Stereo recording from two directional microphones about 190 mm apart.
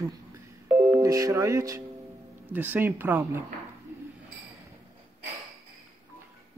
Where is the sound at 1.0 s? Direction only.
15° right (ahead or behind).